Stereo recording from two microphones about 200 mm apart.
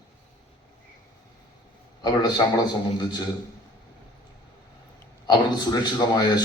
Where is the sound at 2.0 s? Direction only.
20° left (ahead or behind).